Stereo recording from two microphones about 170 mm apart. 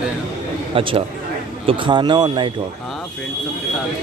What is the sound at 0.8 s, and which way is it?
Speech, 35° right (ahead or behind).